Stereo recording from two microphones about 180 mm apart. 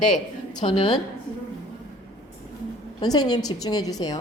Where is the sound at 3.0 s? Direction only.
20° left (ahead or behind).